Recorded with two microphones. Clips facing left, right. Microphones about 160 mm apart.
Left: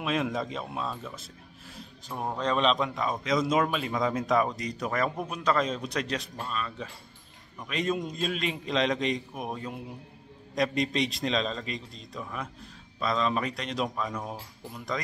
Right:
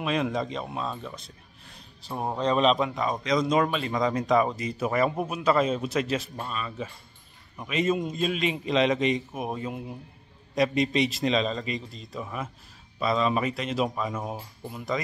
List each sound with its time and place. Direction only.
0.0 s speech: centre (ahead or behind)
2.1 s a man's voice: 15° right (ahead or behind)
2.5 s speech: 5° right (ahead or behind)